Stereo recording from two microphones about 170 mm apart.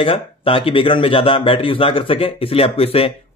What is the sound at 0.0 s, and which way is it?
Speech, 30° left (ahead or behind).